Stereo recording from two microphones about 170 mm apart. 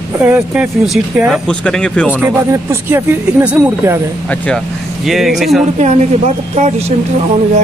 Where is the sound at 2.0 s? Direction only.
10° right (ahead or behind).